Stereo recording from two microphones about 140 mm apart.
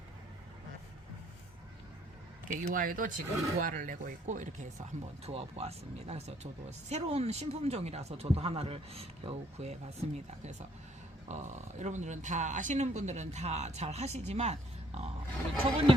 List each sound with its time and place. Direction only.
2.7 s speech: 80° right; by 9.7 s 50° right (ahead or behind)
11.3 s speech: 55° right (ahead or behind)